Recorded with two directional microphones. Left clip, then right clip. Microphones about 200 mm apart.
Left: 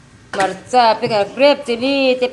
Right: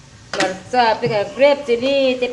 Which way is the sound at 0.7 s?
25° left (ahead or behind).